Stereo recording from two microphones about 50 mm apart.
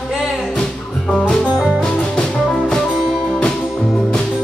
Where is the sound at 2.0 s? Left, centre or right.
Centre.